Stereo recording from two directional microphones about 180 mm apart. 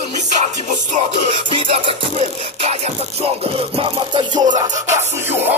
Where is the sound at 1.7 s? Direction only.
35° right (ahead or behind).